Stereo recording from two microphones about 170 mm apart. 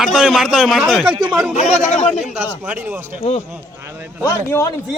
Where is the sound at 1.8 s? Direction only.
40° left (ahead or behind).